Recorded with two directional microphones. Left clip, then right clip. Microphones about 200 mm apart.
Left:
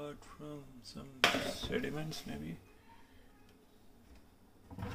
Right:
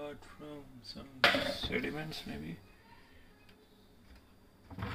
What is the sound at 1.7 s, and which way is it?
Speech, 10° left (ahead or behind).